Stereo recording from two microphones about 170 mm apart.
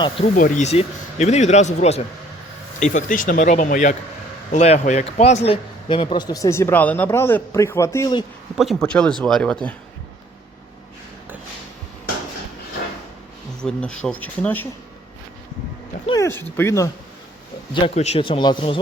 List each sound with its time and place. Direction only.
0.3 s speech: 50° left (ahead or behind); by 8.1 s 15° left (ahead or behind)
8.5 s speech: centre (ahead or behind)
13.6 s speech: 5° left (ahead or behind)
16.0 s speech: 20° left (ahead or behind)
17.7 s speech: 35° left (ahead or behind)